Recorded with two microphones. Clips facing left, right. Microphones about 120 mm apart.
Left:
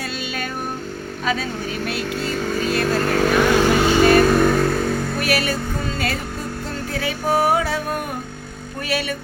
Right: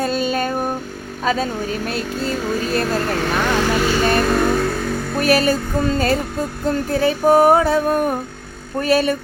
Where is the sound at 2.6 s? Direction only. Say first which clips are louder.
Left 2 dB; 40° right (ahead or behind).